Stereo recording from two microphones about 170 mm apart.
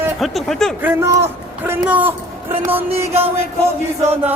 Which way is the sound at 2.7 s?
10° right (ahead or behind).